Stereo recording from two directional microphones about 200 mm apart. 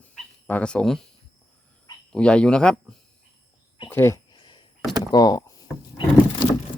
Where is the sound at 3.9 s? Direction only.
15° left (ahead or behind).